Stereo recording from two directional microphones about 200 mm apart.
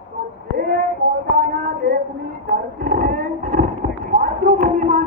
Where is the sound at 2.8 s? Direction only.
45° right (ahead or behind).